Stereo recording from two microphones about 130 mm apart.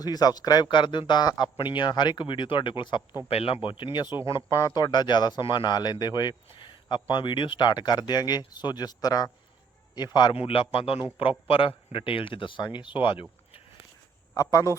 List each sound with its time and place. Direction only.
0.0 s speech: 30° left (ahead or behind)
10.3 s a man's voice: 45° left (ahead or behind)
14.3 s speech: 25° left (ahead or behind)